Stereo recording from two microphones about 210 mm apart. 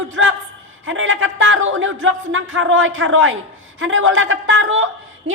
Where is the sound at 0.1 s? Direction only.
65° right (ahead or behind).